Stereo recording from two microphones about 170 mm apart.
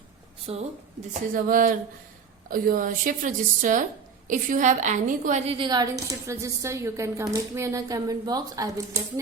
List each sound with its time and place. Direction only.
0.5 s speech: 35° right (ahead or behind)
1.3 s a woman's voice: 55° right (ahead or behind)
5.5 s a woman's voice: 25° right (ahead or behind)